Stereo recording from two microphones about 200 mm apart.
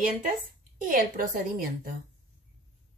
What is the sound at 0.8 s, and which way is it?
A woman's voice, 40° right (ahead or behind).